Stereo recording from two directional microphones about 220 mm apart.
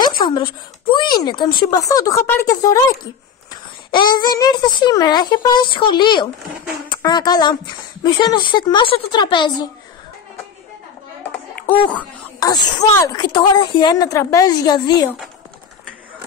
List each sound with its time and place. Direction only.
0.2 s a sound: 20° left (ahead or behind)
1.6 s speech: 15° left (ahead or behind)
11.7 s speech: 5° left (ahead or behind)